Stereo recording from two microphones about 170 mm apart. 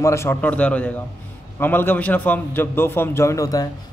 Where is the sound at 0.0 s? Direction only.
15° left (ahead or behind).